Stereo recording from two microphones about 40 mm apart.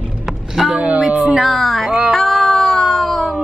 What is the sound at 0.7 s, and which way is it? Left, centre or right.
Speech, right.